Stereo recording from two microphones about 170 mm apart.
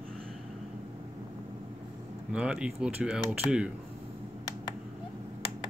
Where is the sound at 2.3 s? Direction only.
5° right (ahead or behind).